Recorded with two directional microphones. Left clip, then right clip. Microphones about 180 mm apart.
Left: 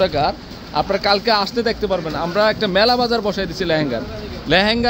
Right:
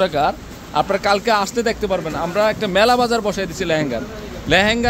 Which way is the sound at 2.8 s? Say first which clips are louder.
Right 2 dB; centre (ahead or behind).